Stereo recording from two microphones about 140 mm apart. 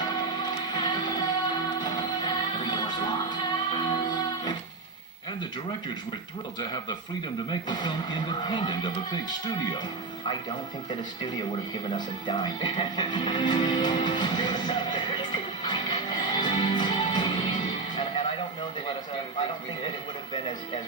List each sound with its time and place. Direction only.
0.0 s music: 30° left (ahead or behind)
7.5 s a man's voice: 30° left (ahead or behind)
11.9 s music: 30° left (ahead or behind)